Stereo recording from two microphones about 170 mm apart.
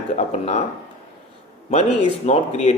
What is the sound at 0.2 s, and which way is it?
Speech, 40° left (ahead or behind).